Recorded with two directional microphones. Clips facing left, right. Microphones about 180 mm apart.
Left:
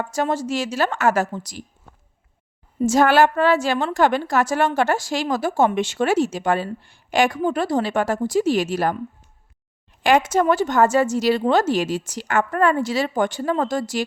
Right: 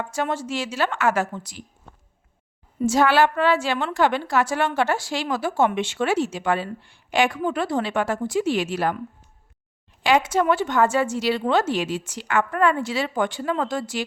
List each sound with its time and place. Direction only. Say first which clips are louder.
0.0 s a woman's voice: left 3 dB; 40° left (ahead or behind)
2.8 s a woman's voice: left 3 dB; 45° left (ahead or behind)
10.0 s a woman's voice: left 2 dB; 50° left (ahead or behind)